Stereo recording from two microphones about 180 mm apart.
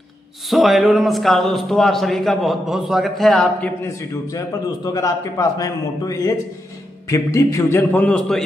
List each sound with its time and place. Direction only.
0.5 s a man's voice: centre (ahead or behind)